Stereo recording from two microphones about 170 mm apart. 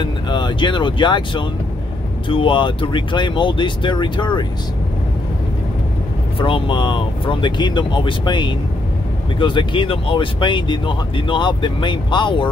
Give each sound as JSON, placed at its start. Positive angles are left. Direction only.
{"t": 0.0, "sound": "speech", "side_deg": 30}
{"t": 6.3, "sound": "speech", "side_deg": 30}